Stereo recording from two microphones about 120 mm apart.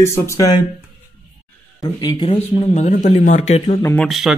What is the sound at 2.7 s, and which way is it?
Speech, 75° left (ahead or behind).